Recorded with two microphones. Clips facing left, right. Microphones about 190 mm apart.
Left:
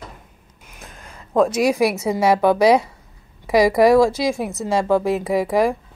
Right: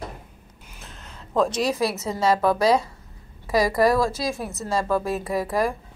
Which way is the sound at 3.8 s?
90° left.